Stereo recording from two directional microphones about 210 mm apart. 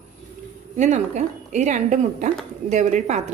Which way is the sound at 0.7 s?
35° right (ahead or behind).